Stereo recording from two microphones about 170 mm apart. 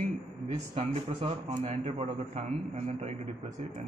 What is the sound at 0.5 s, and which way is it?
A man's voice, 35° right (ahead or behind).